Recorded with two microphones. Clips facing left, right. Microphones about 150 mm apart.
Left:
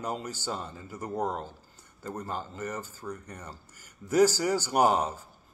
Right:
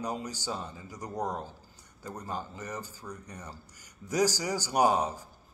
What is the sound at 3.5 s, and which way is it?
A man's voice, 15° right (ahead or behind).